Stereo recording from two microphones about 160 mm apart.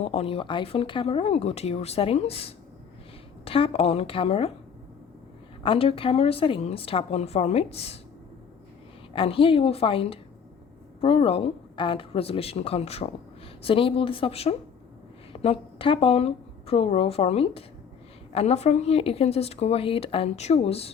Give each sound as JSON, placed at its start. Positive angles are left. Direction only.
{"t": 0.0, "sound": "speech", "side_deg": 40}
{"t": 5.6, "sound": "speech", "side_deg": 35}
{"t": 9.1, "sound": "a woman's voice", "side_deg": 35}